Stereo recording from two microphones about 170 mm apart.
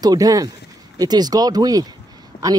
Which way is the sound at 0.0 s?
20° right (ahead or behind).